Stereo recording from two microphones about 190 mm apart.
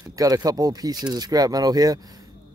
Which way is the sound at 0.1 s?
20° right (ahead or behind).